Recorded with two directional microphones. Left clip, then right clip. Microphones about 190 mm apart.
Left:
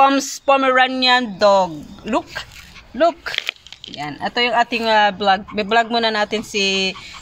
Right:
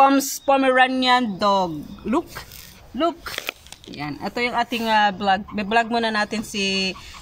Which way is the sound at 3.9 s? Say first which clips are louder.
Left 6 dB; 25° left (ahead or behind).